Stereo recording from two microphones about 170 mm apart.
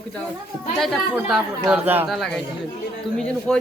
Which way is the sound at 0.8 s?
Centre (ahead or behind).